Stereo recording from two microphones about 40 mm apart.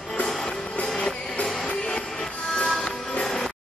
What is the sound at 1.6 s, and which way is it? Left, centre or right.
Music, left.